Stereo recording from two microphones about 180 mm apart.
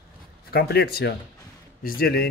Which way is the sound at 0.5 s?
60° left (ahead or behind).